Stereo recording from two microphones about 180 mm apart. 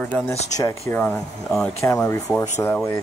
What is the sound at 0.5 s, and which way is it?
Speech, 20° left (ahead or behind).